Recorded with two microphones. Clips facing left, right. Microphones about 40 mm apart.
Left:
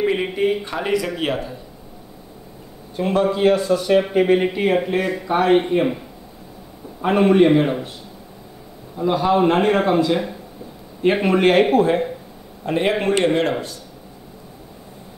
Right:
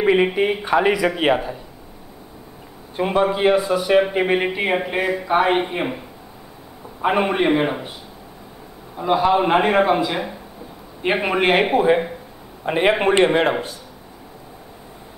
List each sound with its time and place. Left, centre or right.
0.0 s a man's voice: right
3.0 s speech: centre
7.0 s speech: centre
8.9 s a man's voice: centre